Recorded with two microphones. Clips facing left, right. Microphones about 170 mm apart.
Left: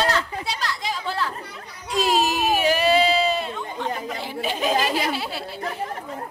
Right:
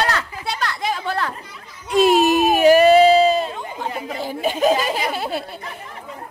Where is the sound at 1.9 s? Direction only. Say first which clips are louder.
Right 7 dB; 55° right (ahead or behind); by 3.6 s 40° right (ahead or behind).